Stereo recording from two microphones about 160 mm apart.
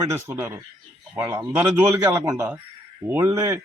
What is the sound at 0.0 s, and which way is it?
A man's voice, 15° right (ahead or behind).